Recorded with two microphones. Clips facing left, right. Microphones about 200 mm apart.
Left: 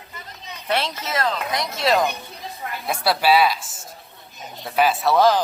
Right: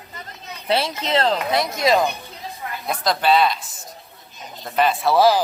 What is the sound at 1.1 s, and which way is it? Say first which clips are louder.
Speech: right 5 dB; 30° right (ahead or behind).